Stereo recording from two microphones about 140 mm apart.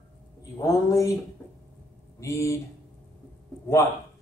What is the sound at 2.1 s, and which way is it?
Speech, 20° left (ahead or behind).